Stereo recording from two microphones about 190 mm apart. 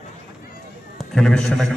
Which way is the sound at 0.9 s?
5° left (ahead or behind).